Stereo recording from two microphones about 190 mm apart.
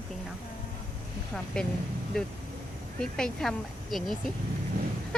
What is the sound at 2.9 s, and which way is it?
A woman's voice, 5° left (ahead or behind).